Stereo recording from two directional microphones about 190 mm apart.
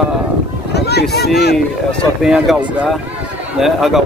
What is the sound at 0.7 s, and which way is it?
Speech, 60° left (ahead or behind).